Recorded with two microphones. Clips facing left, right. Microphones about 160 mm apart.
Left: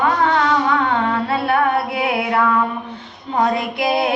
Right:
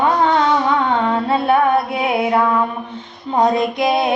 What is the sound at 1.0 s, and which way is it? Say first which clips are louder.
Music: right 3 dB; 20° right (ahead or behind).